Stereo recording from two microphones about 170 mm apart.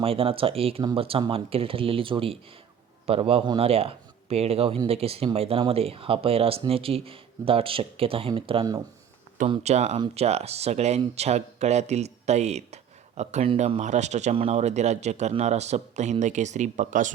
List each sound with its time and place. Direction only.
0.0 s speech: 35° right (ahead or behind)
9.5 s speech: 40° right (ahead or behind)